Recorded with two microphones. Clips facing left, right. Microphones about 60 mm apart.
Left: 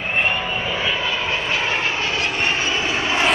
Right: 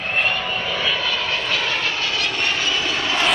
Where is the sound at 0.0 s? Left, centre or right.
Centre.